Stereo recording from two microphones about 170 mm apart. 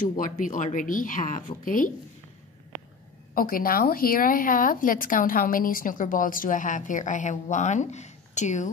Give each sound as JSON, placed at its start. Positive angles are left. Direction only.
{"t": 0.2, "sound": "speech", "side_deg": 50}
{"t": 3.3, "sound": "speech", "side_deg": 55}